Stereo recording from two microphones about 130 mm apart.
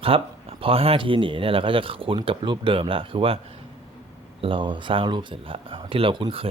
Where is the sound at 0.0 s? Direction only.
45° right (ahead or behind).